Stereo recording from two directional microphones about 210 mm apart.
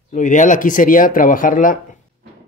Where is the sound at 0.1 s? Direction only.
35° left (ahead or behind).